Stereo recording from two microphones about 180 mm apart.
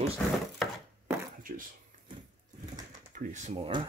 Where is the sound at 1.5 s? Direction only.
50° right (ahead or behind).